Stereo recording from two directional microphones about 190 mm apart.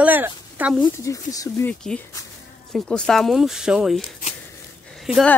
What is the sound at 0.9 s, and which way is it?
Speech, 15° left (ahead or behind).